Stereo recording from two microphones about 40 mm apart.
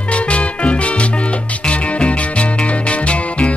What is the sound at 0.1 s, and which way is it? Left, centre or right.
Music, left.